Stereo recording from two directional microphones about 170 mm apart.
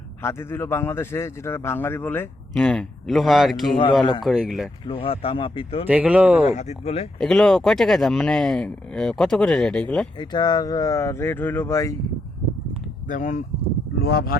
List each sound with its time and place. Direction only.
0.2 s a man's voice: 15° left (ahead or behind); by 4.7 s centre (ahead or behind)
4.9 s speech: 35° left (ahead or behind)
5.9 s speech: 5° right (ahead or behind)
6.4 s speech: 45° left (ahead or behind)
7.2 s speech: 5° left (ahead or behind)
10.2 s speech: 25° left (ahead or behind)
13.1 s speech: 45° left (ahead or behind)
14.0 s speech: 70° left (ahead or behind)